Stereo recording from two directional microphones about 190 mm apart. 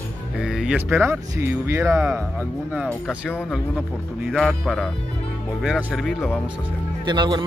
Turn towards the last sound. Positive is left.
turn(degrees=-25)  # may be behind; listen again after turning